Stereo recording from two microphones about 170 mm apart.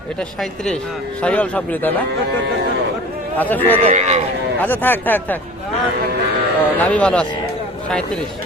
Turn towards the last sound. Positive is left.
turn(degrees=5)  # may be behind; listen again after turning